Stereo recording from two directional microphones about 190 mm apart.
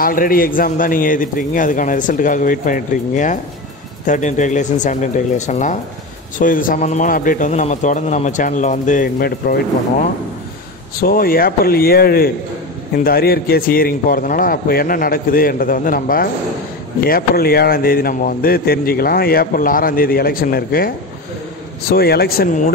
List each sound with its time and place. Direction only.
0.0 s a man's voice: 50° left (ahead or behind)